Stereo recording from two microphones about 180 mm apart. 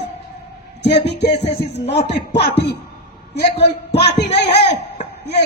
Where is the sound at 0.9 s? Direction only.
70° left (ahead or behind).